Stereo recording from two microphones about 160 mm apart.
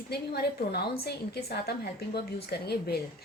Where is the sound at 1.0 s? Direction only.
80° left.